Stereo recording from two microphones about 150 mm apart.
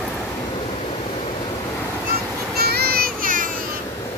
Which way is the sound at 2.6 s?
90° right.